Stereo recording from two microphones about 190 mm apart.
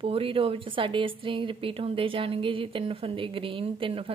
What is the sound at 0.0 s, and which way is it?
Speech, 30° right (ahead or behind).